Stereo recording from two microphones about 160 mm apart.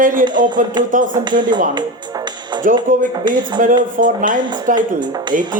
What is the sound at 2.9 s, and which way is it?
Speech, 55° right (ahead or behind).